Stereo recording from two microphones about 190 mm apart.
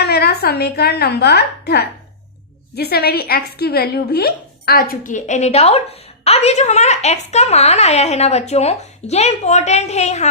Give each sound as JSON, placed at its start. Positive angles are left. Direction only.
{"t": 0.0, "sound": "a woman's voice", "side_deg": 55}